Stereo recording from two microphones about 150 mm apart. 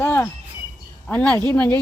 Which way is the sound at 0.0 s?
15° left (ahead or behind).